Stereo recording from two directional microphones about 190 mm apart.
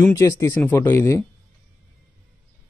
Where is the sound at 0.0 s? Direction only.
15° left (ahead or behind).